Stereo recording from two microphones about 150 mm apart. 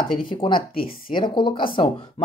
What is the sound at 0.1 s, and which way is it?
Speech, 35° left (ahead or behind).